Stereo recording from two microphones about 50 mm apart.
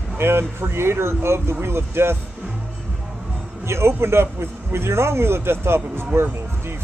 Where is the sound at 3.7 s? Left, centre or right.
Right.